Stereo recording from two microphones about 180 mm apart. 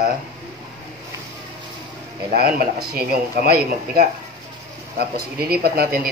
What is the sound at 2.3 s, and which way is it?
Speech, 60° right (ahead or behind).